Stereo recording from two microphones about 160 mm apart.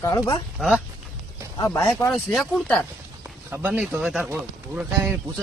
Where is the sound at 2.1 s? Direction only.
5° left (ahead or behind).